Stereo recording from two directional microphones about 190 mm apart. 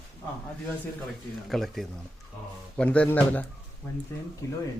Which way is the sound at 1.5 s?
Centre (ahead or behind).